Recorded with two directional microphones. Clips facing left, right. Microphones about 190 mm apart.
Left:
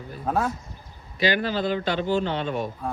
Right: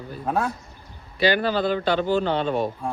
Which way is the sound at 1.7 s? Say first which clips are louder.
Right 2 dB; 45° right (ahead or behind).